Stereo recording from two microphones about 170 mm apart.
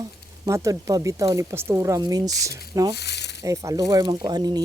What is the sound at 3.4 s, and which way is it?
Speech, 20° right (ahead or behind).